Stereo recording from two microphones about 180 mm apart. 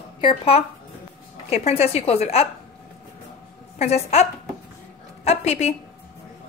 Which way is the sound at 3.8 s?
35° left (ahead or behind).